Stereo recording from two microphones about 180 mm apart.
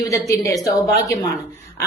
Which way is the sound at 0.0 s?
20° left (ahead or behind).